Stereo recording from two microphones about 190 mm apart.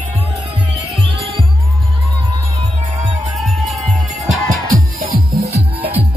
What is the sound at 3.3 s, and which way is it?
Music, centre (ahead or behind).